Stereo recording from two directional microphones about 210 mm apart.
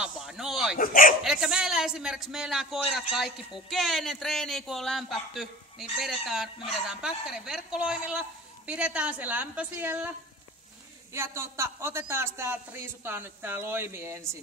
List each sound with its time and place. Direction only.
0.0 s a sound: centre (ahead or behind)
0.7 s speech: 40° left (ahead or behind)
1.2 s speech: 5° right (ahead or behind)
11.1 s speech: 10° right (ahead or behind)